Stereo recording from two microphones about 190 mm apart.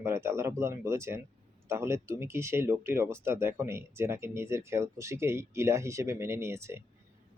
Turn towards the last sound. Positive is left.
turn(degrees=-15)  # may be behind; listen again after turning